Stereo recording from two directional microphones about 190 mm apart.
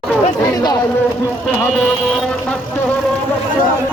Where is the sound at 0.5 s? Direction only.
20° left (ahead or behind).